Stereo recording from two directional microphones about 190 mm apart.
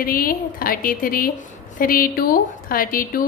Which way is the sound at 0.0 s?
50° left (ahead or behind).